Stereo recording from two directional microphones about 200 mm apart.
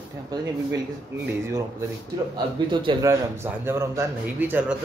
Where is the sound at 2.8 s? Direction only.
15° right (ahead or behind).